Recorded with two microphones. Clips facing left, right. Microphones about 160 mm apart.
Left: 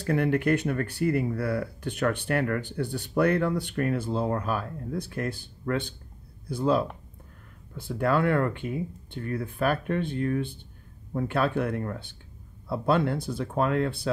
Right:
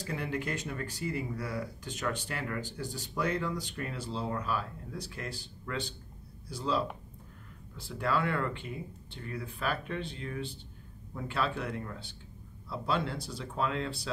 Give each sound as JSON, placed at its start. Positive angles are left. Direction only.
{"t": 0.0, "sound": "speech", "side_deg": 60}